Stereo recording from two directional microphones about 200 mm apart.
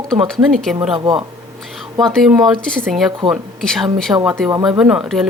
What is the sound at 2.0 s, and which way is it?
Speech, centre (ahead or behind).